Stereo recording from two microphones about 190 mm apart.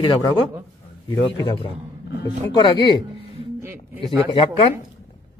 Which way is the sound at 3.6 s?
15° right (ahead or behind).